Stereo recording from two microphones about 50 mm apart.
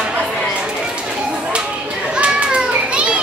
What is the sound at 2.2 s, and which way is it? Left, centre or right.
Children playing, right.